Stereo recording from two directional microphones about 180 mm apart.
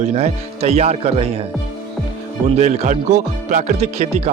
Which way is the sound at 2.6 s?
40° right (ahead or behind).